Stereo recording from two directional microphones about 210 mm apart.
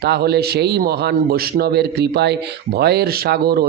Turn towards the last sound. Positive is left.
turn(degrees=-45)  # may be behind; listen again after turning